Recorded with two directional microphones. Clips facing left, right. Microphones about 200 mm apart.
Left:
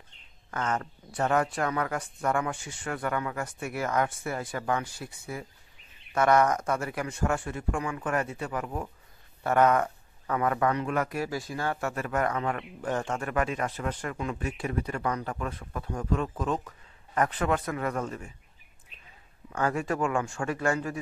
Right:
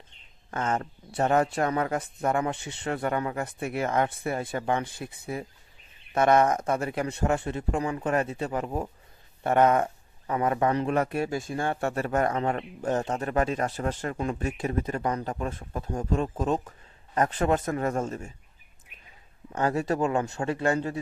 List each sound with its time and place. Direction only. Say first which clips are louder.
0.5 s speech: right 2 dB; 25° right (ahead or behind)
13.2 s speech: right 3 dB; 35° right (ahead or behind)
14.7 s speech: right 2 dB; 25° right (ahead or behind)
17.6 s speech: right 4 dB; 45° right (ahead or behind)
17.8 s speech: right 3 dB; 25° right (ahead or behind)
19.5 s speech: right 2 dB; 25° right (ahead or behind)